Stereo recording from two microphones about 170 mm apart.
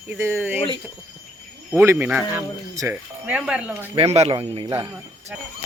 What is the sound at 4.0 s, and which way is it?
Speech, 40° right (ahead or behind).